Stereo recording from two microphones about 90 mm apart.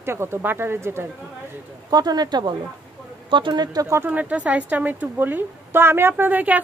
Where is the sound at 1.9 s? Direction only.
50° right (ahead or behind).